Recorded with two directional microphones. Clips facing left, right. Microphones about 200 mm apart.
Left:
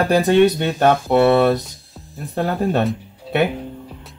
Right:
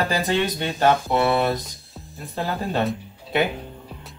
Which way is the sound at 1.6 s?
Centre (ahead or behind).